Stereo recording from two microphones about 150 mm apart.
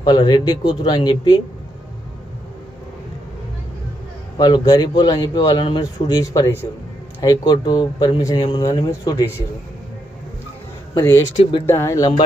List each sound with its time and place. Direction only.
0.0 s a man's voice: 30° left (ahead or behind)
4.4 s a man's voice: 25° left (ahead or behind)
11.0 s a man's voice: 20° left (ahead or behind)